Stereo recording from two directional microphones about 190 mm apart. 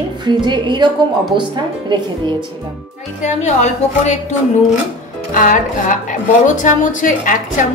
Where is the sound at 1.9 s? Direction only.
25° right (ahead or behind).